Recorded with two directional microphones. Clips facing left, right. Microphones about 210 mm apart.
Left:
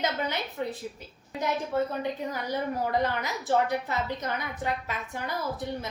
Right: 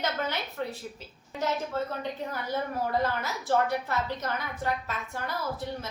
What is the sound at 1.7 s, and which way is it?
Speech, 15° left (ahead or behind).